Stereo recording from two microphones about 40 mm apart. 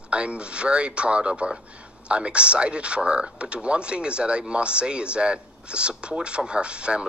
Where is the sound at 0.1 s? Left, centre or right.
Right.